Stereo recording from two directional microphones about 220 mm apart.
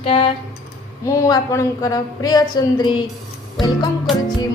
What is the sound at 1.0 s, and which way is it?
A woman's voice, 15° left (ahead or behind).